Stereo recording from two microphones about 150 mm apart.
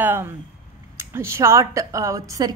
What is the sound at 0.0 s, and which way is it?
A woman's voice, 15° right (ahead or behind).